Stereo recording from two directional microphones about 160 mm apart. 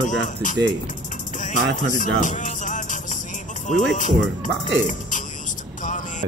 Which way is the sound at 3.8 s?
50° left (ahead or behind).